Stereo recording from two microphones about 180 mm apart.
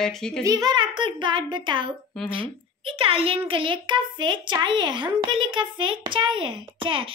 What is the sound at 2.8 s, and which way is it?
A woman's voice, 30° right (ahead or behind).